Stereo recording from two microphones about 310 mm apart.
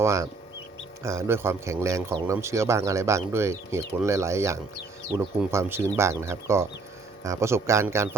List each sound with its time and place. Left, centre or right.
0.0 s speech: centre